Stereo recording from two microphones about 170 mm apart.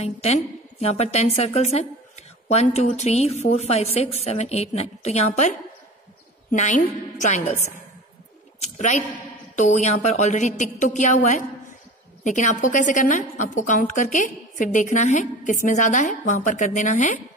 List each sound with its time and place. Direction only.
0.0 s a woman's voice: 40° left (ahead or behind)